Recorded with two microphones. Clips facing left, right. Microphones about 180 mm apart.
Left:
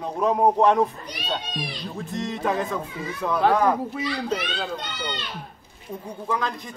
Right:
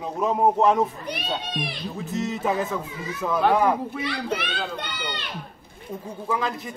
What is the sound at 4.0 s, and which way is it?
Speech, 60° right (ahead or behind).